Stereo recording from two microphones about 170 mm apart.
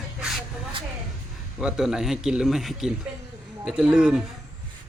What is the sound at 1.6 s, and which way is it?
Speech, centre (ahead or behind).